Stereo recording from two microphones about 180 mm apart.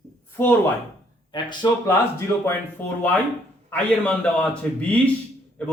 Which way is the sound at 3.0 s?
10° left (ahead or behind).